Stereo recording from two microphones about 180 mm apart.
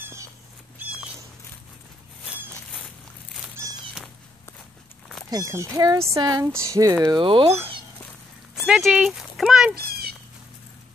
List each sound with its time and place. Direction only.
0.0 s cat: 15° right (ahead or behind)
5.3 s speech: 15° right (ahead or behind)
8.6 s speech: 5° right (ahead or behind)
9.8 s cat: 60° right (ahead or behind)